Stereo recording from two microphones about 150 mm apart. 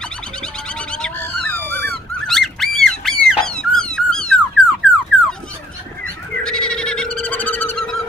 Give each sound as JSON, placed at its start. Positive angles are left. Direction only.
{"t": 0.4, "sound": "bird", "side_deg": 5}
{"t": 1.8, "sound": "a sound", "side_deg": 0}
{"t": 6.3, "sound": "bird", "side_deg": 5}